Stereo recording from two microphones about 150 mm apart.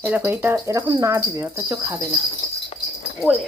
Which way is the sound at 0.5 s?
20° right (ahead or behind).